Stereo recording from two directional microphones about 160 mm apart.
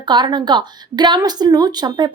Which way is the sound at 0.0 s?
30° right (ahead or behind).